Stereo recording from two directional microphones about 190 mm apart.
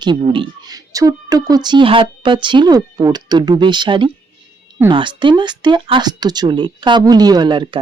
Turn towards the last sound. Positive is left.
turn(degrees=-25)  # may be behind; listen again after turning